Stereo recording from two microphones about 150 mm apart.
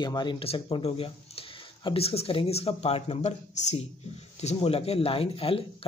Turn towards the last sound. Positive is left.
turn(degrees=40)  # may be behind; listen again after turning